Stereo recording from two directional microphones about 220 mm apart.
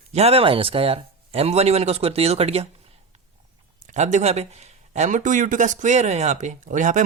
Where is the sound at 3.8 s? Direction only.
30° right (ahead or behind).